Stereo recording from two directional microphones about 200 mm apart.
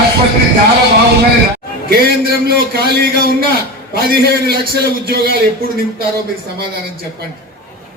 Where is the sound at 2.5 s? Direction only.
50° right (ahead or behind).